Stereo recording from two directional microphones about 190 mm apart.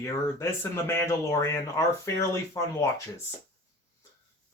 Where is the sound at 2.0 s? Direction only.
15° left (ahead or behind).